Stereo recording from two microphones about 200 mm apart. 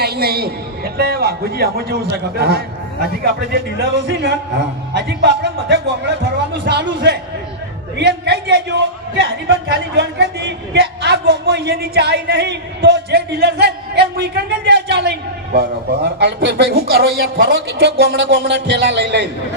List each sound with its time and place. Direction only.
0.0 s a man's voice: 50° right (ahead or behind)